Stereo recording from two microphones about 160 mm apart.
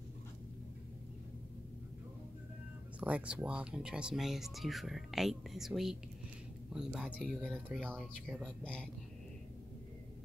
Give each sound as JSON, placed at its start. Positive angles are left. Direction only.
{"t": 3.0, "sound": "speech", "side_deg": -10}
{"t": 7.8, "sound": "speech", "side_deg": -5}
{"t": 8.5, "sound": "speech", "side_deg": 5}